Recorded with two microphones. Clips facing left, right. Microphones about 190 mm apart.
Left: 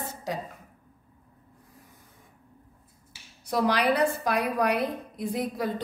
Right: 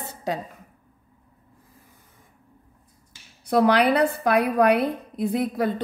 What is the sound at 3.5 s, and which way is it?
A woman's voice, 60° right (ahead or behind).